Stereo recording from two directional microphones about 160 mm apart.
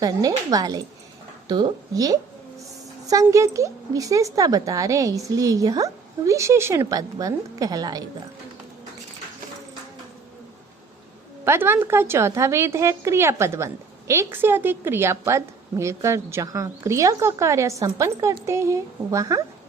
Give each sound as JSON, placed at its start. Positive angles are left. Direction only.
{"t": 0.0, "sound": "a woman's voice", "side_deg": -20}
{"t": 11.4, "sound": "a woman's voice", "side_deg": -15}